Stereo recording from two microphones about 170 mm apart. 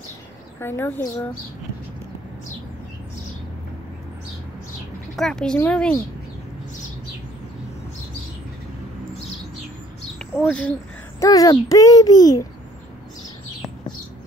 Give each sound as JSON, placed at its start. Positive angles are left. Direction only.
{"t": 0.6, "sound": "a woman's voice", "side_deg": 15}
{"t": 5.1, "sound": "a woman's voice", "side_deg": 5}
{"t": 10.1, "sound": "a sound", "side_deg": 0}
{"t": 11.1, "sound": "a child's voice", "side_deg": 20}